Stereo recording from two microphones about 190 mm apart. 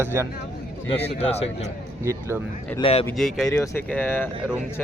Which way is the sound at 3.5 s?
15° left (ahead or behind).